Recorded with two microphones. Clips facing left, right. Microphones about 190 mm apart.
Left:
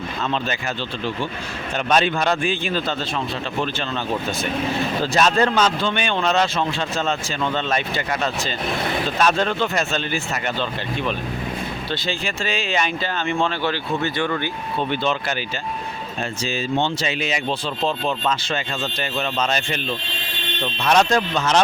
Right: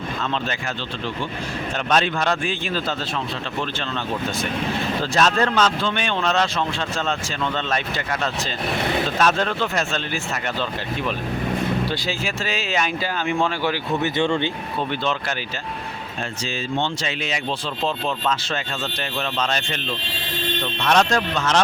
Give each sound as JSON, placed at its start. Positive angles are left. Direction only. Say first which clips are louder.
{"t": 1.9, "sound": "speech", "louder": "left 2 dB", "side_deg": 0}
{"t": 5.1, "sound": "speech", "louder": "left 1 dB", "side_deg": 5}
{"t": 11.9, "sound": "speech", "louder": "even", "side_deg": -5}
{"t": 14.0, "sound": "speech", "louder": "right 5 dB", "side_deg": -25}
{"t": 17.0, "sound": "speech", "louder": "left 3 dB", "side_deg": 5}
{"t": 20.8, "sound": "speech", "louder": "left 2 dB", "side_deg": 5}